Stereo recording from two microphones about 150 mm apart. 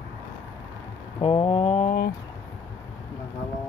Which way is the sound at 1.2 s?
45° left (ahead or behind).